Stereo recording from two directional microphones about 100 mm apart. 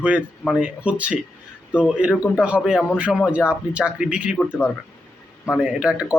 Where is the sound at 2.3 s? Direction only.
10° right (ahead or behind).